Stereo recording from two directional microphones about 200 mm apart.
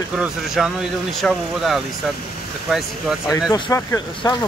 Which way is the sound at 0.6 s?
Centre (ahead or behind).